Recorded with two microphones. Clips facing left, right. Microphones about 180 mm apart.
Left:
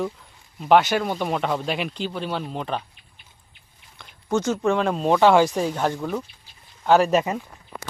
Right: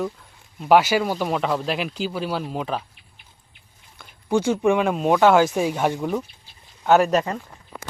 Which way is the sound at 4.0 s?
10° right (ahead or behind).